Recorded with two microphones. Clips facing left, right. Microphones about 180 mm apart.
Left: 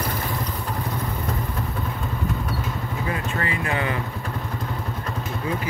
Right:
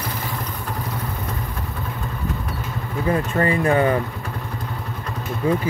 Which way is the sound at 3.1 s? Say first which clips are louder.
Right 9 dB; 40° right (ahead or behind).